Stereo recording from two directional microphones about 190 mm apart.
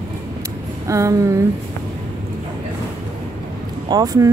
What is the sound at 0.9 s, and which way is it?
Speech, 15° right (ahead or behind).